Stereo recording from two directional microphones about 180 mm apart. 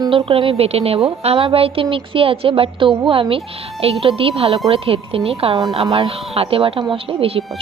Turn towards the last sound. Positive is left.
turn(degrees=-30)  # may be behind; listen again after turning